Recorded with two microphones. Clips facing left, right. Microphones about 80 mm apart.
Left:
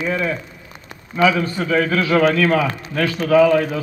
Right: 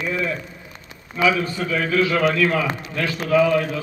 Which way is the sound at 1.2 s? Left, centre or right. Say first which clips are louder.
Left 3 dB; left.